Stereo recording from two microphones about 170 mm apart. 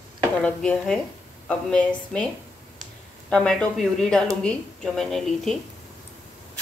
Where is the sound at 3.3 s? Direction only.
5° left (ahead or behind).